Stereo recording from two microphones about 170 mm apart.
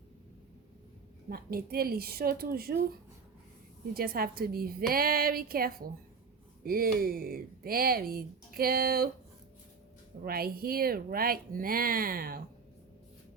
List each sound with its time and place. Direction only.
1.3 s speech: 60° right (ahead or behind)
3.9 s speech: 60° right (ahead or behind)
10.2 s speech: 65° right (ahead or behind)